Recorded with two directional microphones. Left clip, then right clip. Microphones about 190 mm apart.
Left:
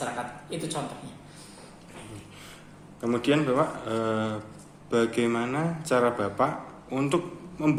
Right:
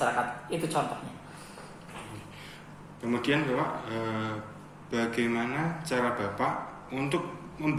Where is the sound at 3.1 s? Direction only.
40° left (ahead or behind).